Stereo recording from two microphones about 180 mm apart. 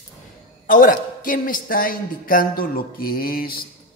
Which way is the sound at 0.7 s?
50° left (ahead or behind).